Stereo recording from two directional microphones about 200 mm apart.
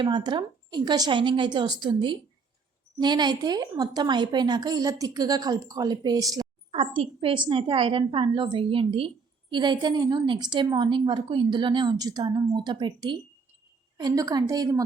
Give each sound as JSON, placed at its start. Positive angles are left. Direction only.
{"t": 0.0, "sound": "a woman's voice", "side_deg": -20}